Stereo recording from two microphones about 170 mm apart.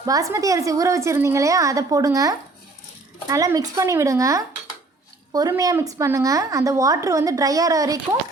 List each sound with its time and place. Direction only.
0.0 s a woman's voice: 20° right (ahead or behind)